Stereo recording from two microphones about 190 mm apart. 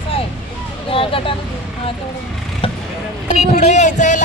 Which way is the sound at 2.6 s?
30° left (ahead or behind).